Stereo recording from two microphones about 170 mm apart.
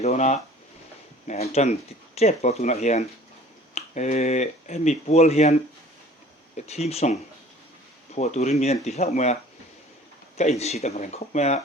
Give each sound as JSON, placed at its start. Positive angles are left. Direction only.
{"t": 0.0, "sound": "speech", "side_deg": 40}
{"t": 6.6, "sound": "speech", "side_deg": 40}
{"t": 10.6, "sound": "speech", "side_deg": 40}